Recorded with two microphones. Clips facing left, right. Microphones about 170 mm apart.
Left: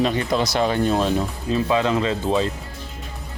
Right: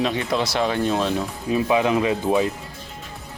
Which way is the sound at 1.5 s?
15° right (ahead or behind).